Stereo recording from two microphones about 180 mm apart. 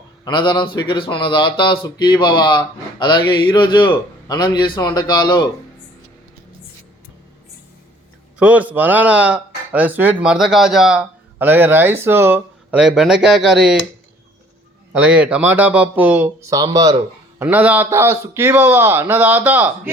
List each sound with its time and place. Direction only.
0.3 s speech: 25° left (ahead or behind)
8.4 s speech: 10° right (ahead or behind)
14.9 s speech: 5° right (ahead or behind)
16.5 s speech: 20° right (ahead or behind)
17.4 s speech: 10° right (ahead or behind)